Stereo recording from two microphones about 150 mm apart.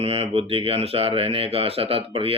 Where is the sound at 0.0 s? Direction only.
40° right (ahead or behind).